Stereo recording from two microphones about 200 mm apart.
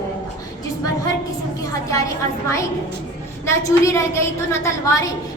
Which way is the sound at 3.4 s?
15° left (ahead or behind).